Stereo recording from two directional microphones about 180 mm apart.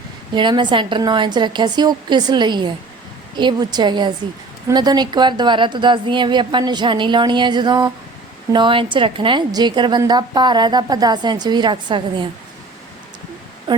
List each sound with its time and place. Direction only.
0.3 s a woman's voice: 25° right (ahead or behind)
13.7 s a woman's voice: 25° right (ahead or behind)